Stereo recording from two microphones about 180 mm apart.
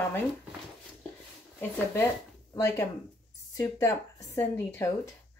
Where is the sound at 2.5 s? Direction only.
15° left (ahead or behind).